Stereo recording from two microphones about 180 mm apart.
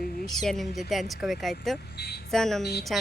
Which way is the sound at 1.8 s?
65° left (ahead or behind).